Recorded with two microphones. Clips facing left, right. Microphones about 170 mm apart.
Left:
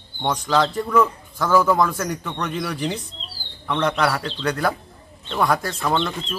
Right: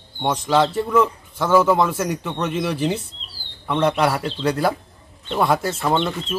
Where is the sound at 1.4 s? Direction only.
25° right (ahead or behind).